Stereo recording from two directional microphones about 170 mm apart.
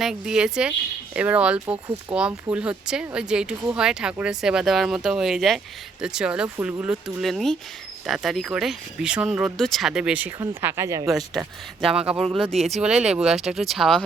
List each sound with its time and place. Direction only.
0.0 s speech: 5° right (ahead or behind)
11.3 s speech: 5° right (ahead or behind)